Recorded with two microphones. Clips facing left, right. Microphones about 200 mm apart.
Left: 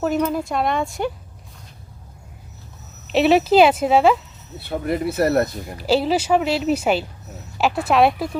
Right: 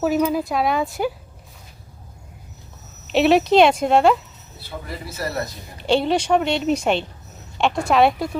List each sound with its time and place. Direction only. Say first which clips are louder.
0.0 s a woman's voice: right 1 dB; 5° right (ahead or behind)
3.1 s a woman's voice: even; centre (ahead or behind)
4.7 s speech: left 11 dB; 60° left (ahead or behind)
5.7 s a woman's voice: even; 5° left (ahead or behind)